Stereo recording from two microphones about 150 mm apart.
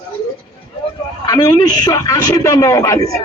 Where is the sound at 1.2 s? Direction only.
25° left (ahead or behind).